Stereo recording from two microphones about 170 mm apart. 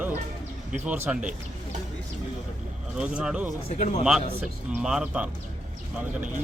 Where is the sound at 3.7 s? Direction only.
40° left (ahead or behind).